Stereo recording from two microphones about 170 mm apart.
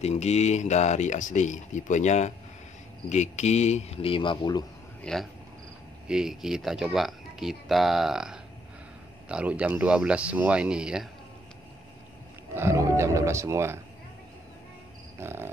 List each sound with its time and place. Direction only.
0.0 s speech: 40° left (ahead or behind)
5.0 s speech: 5° left (ahead or behind)
12.5 s speech: 15° right (ahead or behind)
15.1 s speech: 15° right (ahead or behind)